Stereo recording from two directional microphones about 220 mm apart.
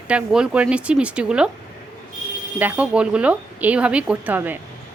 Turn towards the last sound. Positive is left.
turn(degrees=-10)  # may be behind; listen again after turning